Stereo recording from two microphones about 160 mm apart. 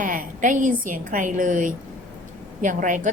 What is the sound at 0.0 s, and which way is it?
A woman's voice, 55° right (ahead or behind).